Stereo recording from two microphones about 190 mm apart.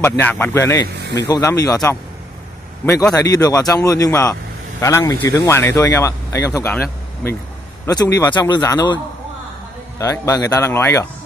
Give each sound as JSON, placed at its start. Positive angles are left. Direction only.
{"t": 0.2, "sound": "a man's voice", "side_deg": 10}
{"t": 7.8, "sound": "a man's voice", "side_deg": 15}